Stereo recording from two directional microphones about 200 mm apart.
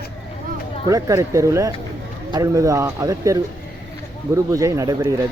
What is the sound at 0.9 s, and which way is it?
Speech, 15° right (ahead or behind).